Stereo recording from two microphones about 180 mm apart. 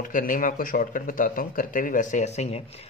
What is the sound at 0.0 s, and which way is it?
Speech, 45° left (ahead or behind).